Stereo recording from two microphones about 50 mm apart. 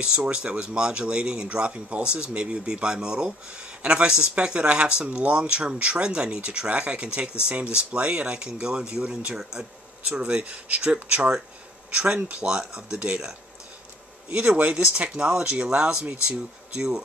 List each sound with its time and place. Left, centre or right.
0.3 s speech: centre
14.3 s speech: right